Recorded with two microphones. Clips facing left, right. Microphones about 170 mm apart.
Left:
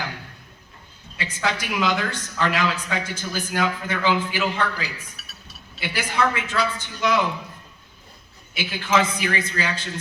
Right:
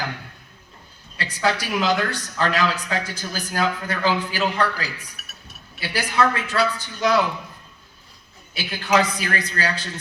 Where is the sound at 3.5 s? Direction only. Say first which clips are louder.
Right 1 dB; 40° right (ahead or behind).